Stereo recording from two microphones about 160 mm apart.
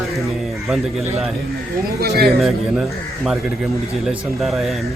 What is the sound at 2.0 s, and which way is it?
Speech, 75° right (ahead or behind).